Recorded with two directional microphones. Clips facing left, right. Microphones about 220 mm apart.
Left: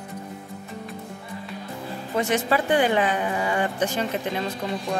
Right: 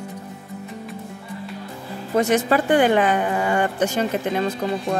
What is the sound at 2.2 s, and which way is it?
Speech, 45° right (ahead or behind).